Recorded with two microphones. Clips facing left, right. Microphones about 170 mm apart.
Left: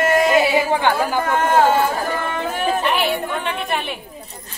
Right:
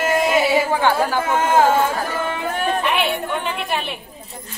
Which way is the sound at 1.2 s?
5° right (ahead or behind).